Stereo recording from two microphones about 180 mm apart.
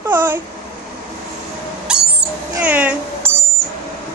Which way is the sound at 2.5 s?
10° right (ahead or behind).